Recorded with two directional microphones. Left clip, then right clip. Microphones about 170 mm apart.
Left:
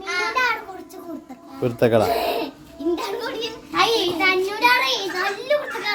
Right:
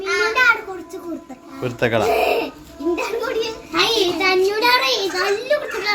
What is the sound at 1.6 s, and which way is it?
Speech, 50° left (ahead or behind).